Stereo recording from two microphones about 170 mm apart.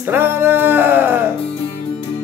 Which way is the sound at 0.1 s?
10° right (ahead or behind).